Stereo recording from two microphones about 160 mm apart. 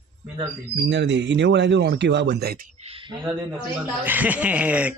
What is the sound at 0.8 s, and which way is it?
Speech, 90° right.